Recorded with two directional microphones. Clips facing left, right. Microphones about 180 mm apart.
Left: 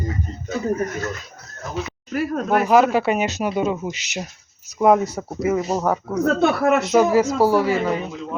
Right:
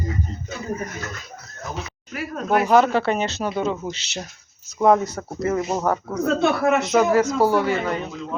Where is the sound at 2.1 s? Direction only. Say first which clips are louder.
Left 2 dB; 45° left (ahead or behind).